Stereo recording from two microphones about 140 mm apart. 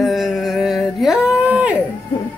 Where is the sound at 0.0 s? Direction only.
Centre (ahead or behind).